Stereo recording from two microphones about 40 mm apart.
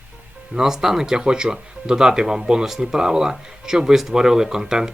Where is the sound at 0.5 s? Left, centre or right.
Centre.